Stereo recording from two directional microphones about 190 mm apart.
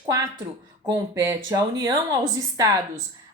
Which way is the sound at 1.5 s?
20° right (ahead or behind).